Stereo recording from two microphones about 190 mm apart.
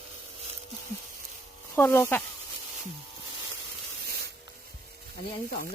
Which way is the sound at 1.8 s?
15° left (ahead or behind).